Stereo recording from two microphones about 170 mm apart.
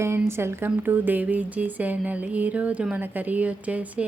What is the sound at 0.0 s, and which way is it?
Speech, 15° right (ahead or behind).